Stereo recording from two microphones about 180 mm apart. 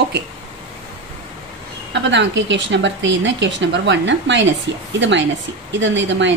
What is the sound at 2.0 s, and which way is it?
A woman's voice, 85° right.